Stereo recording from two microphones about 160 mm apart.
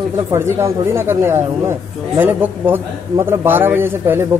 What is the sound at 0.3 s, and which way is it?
Speech, 15° right (ahead or behind).